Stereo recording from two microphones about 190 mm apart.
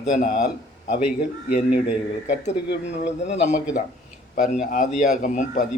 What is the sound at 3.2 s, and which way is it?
A man's voice, 35° left (ahead or behind).